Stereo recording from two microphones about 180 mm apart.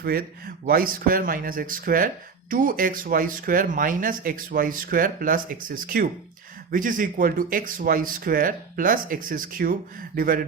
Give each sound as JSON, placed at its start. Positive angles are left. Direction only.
{"t": 0.0, "sound": "speech", "side_deg": -55}